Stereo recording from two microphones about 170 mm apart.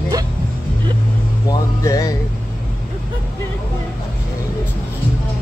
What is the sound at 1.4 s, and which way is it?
Speech, 20° left (ahead or behind).